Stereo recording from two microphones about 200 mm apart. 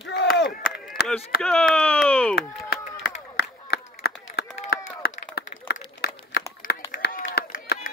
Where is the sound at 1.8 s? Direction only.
5° left (ahead or behind).